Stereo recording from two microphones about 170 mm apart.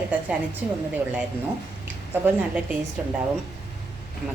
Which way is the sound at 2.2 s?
10° right (ahead or behind).